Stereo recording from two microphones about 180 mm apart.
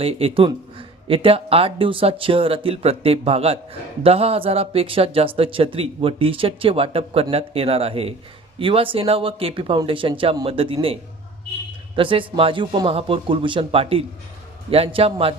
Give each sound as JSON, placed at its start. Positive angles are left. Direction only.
{"t": 0.0, "sound": "speech", "side_deg": -30}
{"t": 11.9, "sound": "speech", "side_deg": -30}